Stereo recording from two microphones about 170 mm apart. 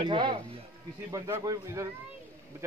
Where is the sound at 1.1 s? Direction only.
15° right (ahead or behind).